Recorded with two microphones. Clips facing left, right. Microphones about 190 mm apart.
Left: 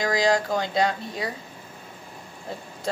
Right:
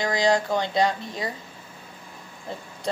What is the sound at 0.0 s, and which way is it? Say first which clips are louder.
Speech: even; 25° right (ahead or behind).